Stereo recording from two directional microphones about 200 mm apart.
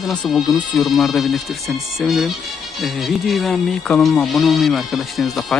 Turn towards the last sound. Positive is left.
turn(degrees=0)  # may be behind; listen again after turning